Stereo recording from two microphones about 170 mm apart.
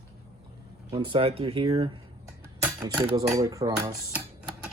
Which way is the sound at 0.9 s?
30° right (ahead or behind).